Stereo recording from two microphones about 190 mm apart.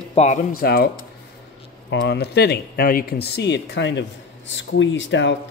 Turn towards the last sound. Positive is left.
turn(degrees=70)  # may be behind; listen again after turning